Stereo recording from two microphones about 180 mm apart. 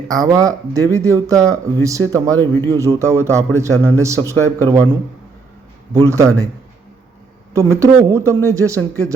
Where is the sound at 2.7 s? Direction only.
15° right (ahead or behind).